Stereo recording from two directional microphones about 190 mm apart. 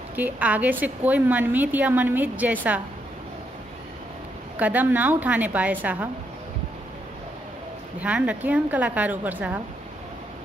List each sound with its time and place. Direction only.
0.1 s a woman's voice: 10° right (ahead or behind)
4.6 s a woman's voice: 10° right (ahead or behind)
8.0 s a woman's voice: 5° right (ahead or behind)